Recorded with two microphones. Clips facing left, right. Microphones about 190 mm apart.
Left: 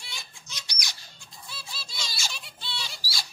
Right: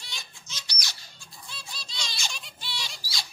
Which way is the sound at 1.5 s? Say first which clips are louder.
Left 1 dB; 5° left (ahead or behind).